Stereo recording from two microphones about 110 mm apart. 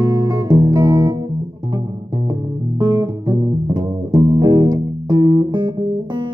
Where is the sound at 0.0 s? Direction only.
40° right (ahead or behind).